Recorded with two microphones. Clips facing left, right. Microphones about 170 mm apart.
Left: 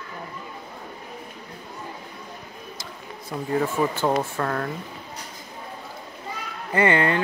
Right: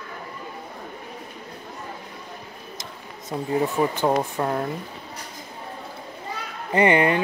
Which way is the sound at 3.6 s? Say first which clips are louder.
Right 1 dB; 15° right (ahead or behind).